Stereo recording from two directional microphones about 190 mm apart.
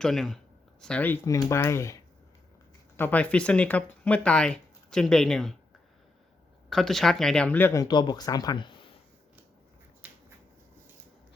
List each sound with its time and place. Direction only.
0.0 s speech: centre (ahead or behind)
6.7 s speech: centre (ahead or behind); by 8.9 s 25° left (ahead or behind)
10.0 s finger snapping: 10° right (ahead or behind)